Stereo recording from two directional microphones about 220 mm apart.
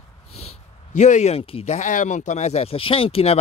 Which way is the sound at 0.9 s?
30° left (ahead or behind).